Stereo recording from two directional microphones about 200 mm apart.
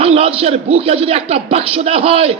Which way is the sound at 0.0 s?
30° right (ahead or behind).